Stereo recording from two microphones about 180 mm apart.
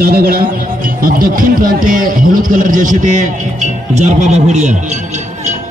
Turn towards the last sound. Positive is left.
turn(degrees=-40)  # may be behind; listen again after turning